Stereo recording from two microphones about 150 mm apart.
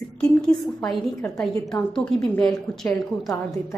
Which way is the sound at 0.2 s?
5° left (ahead or behind).